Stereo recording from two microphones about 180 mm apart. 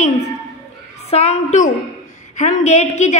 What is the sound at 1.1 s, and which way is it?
A woman's voice, 35° left (ahead or behind).